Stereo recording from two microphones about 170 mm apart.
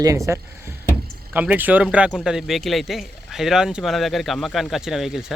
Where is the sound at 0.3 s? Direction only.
15° right (ahead or behind).